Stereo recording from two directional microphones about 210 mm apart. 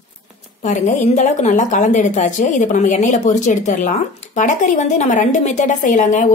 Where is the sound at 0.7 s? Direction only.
35° left (ahead or behind).